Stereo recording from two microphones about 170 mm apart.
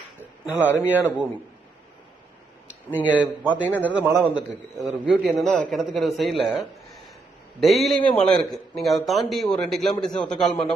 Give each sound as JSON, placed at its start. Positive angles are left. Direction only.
{"t": 0.8, "sound": "a man's voice", "side_deg": -10}
{"t": 2.9, "sound": "speech", "side_deg": 10}
{"t": 3.4, "sound": "a man's voice", "side_deg": -10}
{"t": 7.6, "sound": "a man's voice", "side_deg": 0}